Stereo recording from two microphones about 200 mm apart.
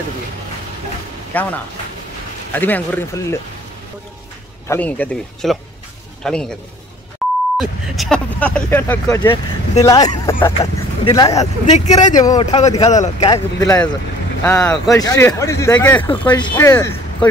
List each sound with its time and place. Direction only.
1.3 s speech: 10° left (ahead or behind)
4.6 s speech: 10° left (ahead or behind)
7.5 s speech: centre (ahead or behind); by 11.4 s 20° left (ahead or behind)
11.7 s speech: 35° left (ahead or behind)
12.1 s speech: 20° left (ahead or behind)
12.5 s speech: 30° left (ahead or behind)
13.3 s speech: 20° left (ahead or behind)